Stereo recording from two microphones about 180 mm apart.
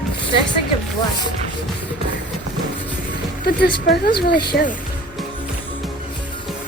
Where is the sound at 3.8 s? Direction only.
65° left (ahead or behind).